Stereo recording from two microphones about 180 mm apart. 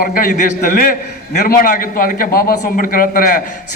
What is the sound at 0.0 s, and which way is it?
A man's voice, 55° left (ahead or behind).